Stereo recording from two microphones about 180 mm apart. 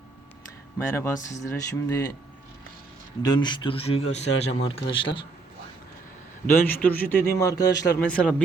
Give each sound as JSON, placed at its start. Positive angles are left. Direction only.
{"t": 0.8, "sound": "a man's voice", "side_deg": 15}
{"t": 3.2, "sound": "speech", "side_deg": 25}
{"t": 6.5, "sound": "a man's voice", "side_deg": 10}
{"t": 7.9, "sound": "a man's voice", "side_deg": 5}